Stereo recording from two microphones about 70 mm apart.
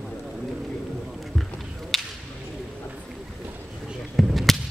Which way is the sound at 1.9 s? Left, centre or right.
Centre.